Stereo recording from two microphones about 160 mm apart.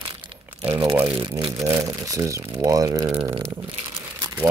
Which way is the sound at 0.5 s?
30° right (ahead or behind).